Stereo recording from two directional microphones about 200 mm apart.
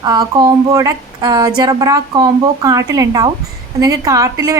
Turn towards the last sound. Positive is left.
turn(degrees=-15)  # may be behind; listen again after turning